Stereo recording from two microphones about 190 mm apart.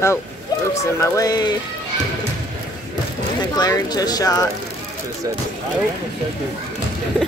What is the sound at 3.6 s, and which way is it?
Speech, 20° left (ahead or behind).